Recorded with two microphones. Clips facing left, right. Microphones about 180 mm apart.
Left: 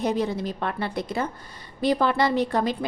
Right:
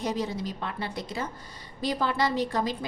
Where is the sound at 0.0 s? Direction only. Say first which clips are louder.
Left 5 dB; 60° left (ahead or behind).